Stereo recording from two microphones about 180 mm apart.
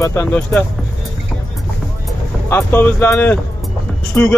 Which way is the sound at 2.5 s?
10° left (ahead or behind).